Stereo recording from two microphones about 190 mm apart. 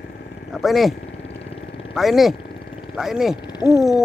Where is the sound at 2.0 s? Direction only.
Centre (ahead or behind).